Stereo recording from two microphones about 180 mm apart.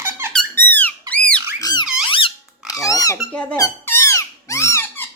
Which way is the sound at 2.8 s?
20° left (ahead or behind).